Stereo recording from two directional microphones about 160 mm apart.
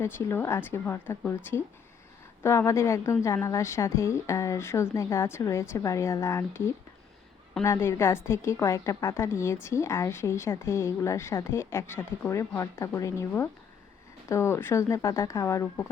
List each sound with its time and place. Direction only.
0.0 s a woman's voice: 15° left (ahead or behind)
7.6 s a woman's voice: 15° left (ahead or behind)